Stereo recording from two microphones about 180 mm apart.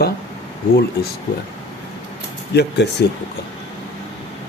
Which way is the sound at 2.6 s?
65° left (ahead or behind).